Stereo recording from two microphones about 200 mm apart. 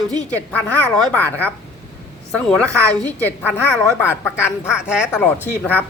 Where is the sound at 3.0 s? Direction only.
10° left (ahead or behind).